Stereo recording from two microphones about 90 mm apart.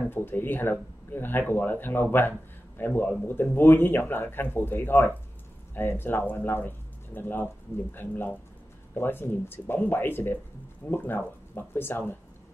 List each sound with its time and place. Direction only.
0.1 s speech: 25° left (ahead or behind)